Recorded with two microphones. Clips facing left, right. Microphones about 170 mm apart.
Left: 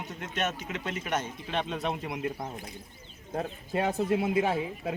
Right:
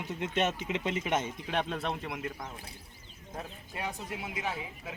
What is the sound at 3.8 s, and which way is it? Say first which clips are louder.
Speech: left 10 dB; 55° left (ahead or behind).